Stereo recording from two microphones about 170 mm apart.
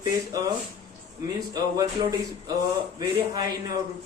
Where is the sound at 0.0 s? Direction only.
20° right (ahead or behind).